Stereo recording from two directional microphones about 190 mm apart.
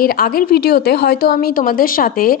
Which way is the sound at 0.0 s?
50° left (ahead or behind).